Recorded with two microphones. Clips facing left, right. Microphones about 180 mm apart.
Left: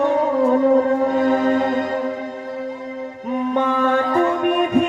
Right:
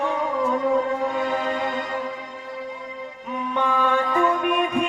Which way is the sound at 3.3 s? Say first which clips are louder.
Left 5 dB; 45° left (ahead or behind).